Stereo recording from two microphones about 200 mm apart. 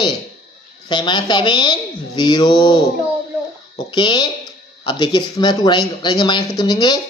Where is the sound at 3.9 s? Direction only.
20° left (ahead or behind).